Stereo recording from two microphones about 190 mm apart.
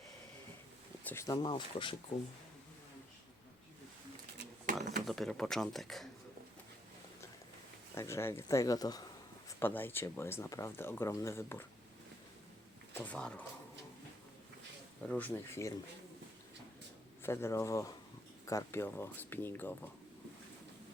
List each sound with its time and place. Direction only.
1.0 s speech: 15° left (ahead or behind)
4.7 s a sound: 45° right (ahead or behind)
5.0 s speech: centre (ahead or behind)
7.9 s speech: 15° left (ahead or behind)
13.0 s speech: 5° left (ahead or behind)
15.0 s speech: 5° left (ahead or behind)
17.2 s speech: 15° left (ahead or behind)